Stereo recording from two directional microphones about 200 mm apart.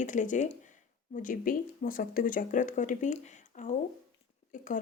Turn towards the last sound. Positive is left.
turn(degrees=40)  # may be behind; listen again after turning